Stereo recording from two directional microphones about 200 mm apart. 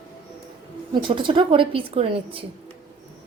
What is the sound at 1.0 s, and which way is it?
A woman's voice, 25° right (ahead or behind).